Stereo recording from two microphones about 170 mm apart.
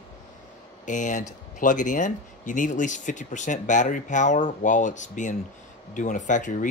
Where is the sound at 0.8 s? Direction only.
45° left (ahead or behind).